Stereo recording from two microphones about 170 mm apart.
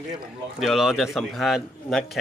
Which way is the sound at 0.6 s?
Centre (ahead or behind).